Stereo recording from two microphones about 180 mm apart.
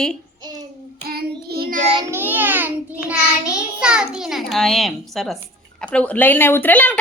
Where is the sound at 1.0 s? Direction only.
60° right (ahead or behind).